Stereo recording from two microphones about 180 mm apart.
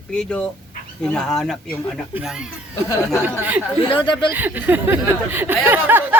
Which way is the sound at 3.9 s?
25° left (ahead or behind).